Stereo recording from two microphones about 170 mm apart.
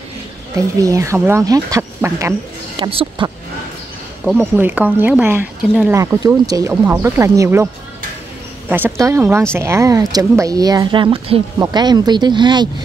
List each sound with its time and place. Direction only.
0.6 s speech: 20° right (ahead or behind)
2.8 s speech: 30° right (ahead or behind)
4.2 s speech: 10° right (ahead or behind); by 12.6 s 25° right (ahead or behind)